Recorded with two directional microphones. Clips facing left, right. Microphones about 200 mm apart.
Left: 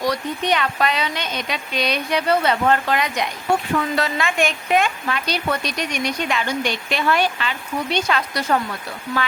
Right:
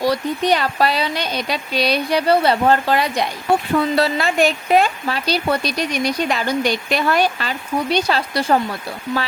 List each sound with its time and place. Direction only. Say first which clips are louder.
0.0 s speech: right 4 dB; 35° right (ahead or behind)